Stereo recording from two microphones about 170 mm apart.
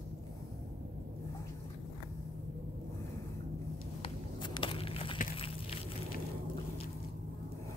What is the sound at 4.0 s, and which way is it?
Walk, 25° left (ahead or behind).